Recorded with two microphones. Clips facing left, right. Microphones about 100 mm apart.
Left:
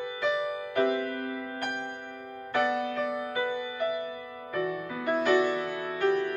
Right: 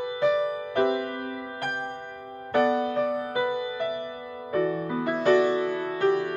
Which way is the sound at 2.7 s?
35° right (ahead or behind).